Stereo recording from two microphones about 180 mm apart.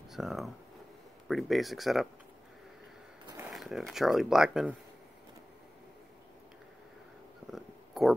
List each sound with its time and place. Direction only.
0.1 s speech: centre (ahead or behind)
3.4 s speech: centre (ahead or behind)
7.5 s a sound: centre (ahead or behind)